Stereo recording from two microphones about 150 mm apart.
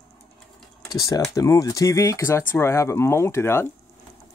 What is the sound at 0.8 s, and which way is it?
Speech, 25° left (ahead or behind).